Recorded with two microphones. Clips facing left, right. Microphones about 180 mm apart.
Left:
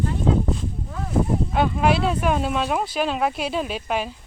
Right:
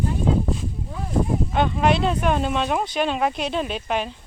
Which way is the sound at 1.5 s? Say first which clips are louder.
Even; 5° left (ahead or behind).